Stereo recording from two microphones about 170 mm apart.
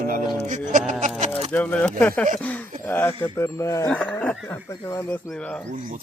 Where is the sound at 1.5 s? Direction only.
10° left (ahead or behind).